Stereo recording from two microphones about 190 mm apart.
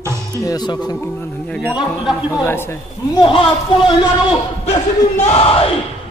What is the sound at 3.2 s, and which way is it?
Speech, 30° left (ahead or behind).